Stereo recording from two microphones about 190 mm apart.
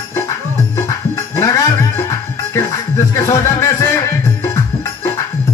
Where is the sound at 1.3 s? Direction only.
15° left (ahead or behind).